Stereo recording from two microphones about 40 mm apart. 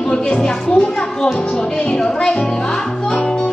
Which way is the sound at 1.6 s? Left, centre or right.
Centre.